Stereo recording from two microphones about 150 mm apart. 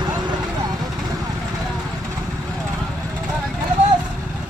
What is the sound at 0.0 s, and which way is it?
Vehicle, 30° right (ahead or behind).